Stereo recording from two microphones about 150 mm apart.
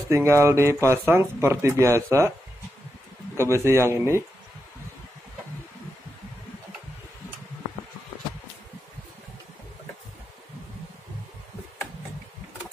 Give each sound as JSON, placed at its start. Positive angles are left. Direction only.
{"t": 0.1, "sound": "speech", "side_deg": -20}
{"t": 3.3, "sound": "speech", "side_deg": -20}